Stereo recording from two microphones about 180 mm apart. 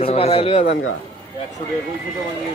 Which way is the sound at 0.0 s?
35° left (ahead or behind).